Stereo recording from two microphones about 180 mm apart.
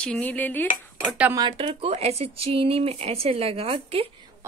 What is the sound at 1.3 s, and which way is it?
Speech, 25° right (ahead or behind).